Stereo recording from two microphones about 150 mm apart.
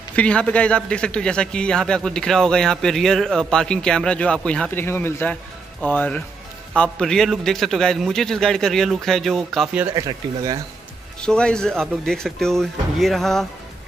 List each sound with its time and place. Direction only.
0.1 s a man's voice: 10° left (ahead or behind)
9.9 s speech: 25° right (ahead or behind)
11.1 s a man's voice: 5° left (ahead or behind)